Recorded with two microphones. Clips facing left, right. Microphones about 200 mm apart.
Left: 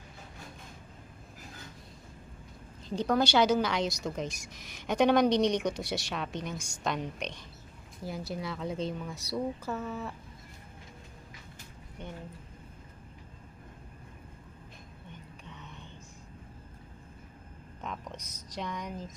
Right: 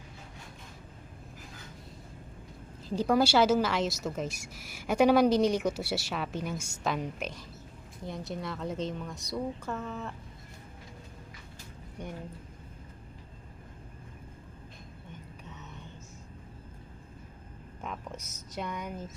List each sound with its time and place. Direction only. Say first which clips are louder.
2.9 s a woman's voice: right 2 dB; 5° right (ahead or behind)
17.7 s speech: right 1 dB; 5° right (ahead or behind)